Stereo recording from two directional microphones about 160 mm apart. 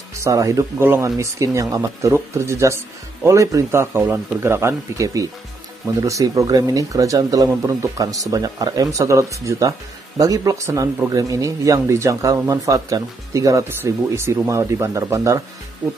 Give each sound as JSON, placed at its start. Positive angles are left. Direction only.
{"t": 0.2, "sound": "speech", "side_deg": -20}